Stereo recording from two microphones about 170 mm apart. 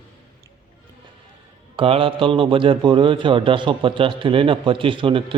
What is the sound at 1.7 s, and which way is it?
A man's voice, 35° right (ahead or behind).